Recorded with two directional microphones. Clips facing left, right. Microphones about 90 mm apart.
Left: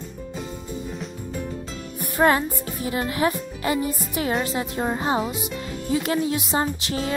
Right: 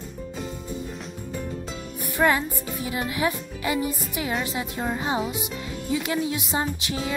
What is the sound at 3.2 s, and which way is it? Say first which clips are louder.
A woman's voice: left 3 dB; 40° left (ahead or behind).